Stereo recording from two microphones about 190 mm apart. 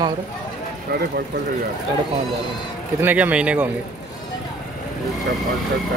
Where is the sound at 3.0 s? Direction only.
10° right (ahead or behind).